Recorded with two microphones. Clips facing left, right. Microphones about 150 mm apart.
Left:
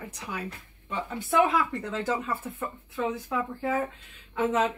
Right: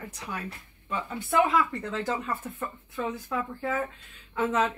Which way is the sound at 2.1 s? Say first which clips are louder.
Left 1 dB; 10° left (ahead or behind).